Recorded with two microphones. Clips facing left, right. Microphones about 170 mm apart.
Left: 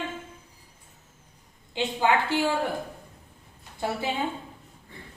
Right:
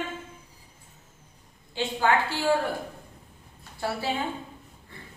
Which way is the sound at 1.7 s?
20° left (ahead or behind).